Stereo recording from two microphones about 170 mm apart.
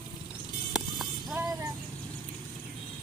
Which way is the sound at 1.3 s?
15° right (ahead or behind).